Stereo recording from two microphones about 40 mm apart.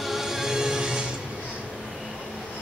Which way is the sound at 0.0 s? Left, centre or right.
Centre.